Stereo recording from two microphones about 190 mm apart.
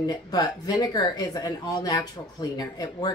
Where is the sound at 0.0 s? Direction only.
20° left (ahead or behind).